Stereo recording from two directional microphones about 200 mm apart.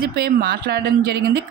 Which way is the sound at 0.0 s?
55° right (ahead or behind).